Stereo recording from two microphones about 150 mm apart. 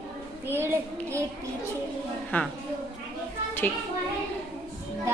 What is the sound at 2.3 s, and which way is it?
Speech, 10° left (ahead or behind).